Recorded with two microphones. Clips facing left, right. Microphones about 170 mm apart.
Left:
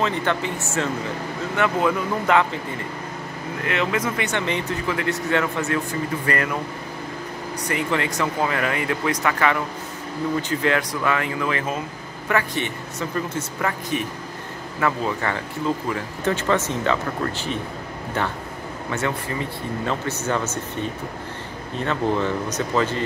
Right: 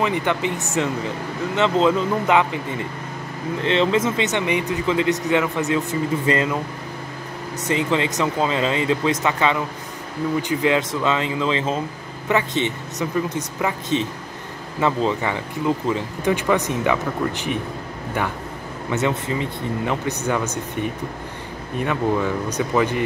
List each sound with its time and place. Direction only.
0.0 s speech: 15° right (ahead or behind)
3.6 s speech: 25° right (ahead or behind)
7.6 s speech: 20° right (ahead or behind)
18.9 s speech: 20° right (ahead or behind)